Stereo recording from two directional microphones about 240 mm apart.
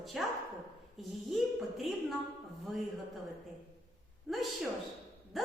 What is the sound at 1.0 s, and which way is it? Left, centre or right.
A woman's voice, centre.